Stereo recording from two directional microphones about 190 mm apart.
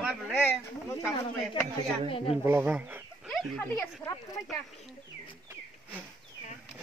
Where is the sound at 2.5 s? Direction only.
10° right (ahead or behind).